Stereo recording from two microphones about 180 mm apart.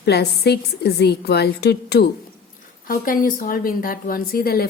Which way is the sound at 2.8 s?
50° left (ahead or behind).